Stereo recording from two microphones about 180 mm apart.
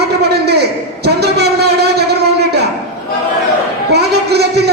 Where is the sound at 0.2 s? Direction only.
65° right (ahead or behind).